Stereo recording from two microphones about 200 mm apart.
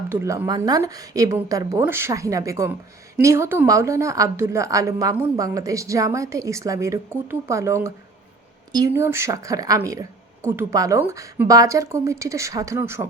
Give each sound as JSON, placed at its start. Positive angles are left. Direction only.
{"t": 0.1, "sound": "speech", "side_deg": -15}